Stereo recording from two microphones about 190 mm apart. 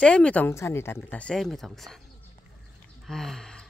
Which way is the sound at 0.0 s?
5° left (ahead or behind).